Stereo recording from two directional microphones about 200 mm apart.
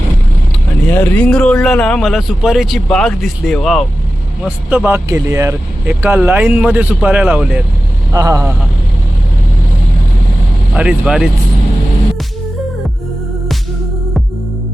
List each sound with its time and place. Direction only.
0.9 s speech: 10° left (ahead or behind)
8.1 s speech: 15° right (ahead or behind)
10.8 s speech: 5° right (ahead or behind)